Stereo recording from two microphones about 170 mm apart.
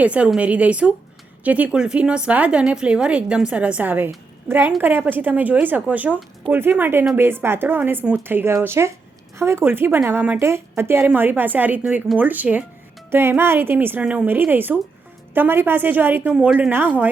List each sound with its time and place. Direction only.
0.0 s a woman's voice: 5° right (ahead or behind)